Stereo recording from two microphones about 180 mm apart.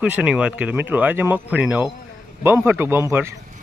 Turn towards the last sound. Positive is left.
turn(degrees=-15)  # may be behind; listen again after turning